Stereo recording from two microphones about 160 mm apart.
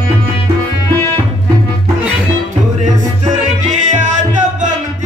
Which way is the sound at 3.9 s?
50° right (ahead or behind).